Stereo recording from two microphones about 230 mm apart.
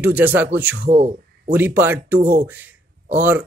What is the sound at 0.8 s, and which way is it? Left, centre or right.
Speech, right.